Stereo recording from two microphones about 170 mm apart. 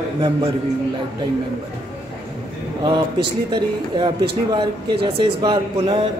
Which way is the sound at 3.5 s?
30° right (ahead or behind).